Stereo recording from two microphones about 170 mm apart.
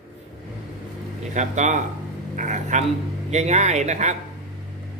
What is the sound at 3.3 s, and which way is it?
Speech, 40° right (ahead or behind).